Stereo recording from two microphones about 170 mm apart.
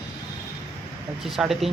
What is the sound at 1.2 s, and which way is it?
Speech, centre (ahead or behind).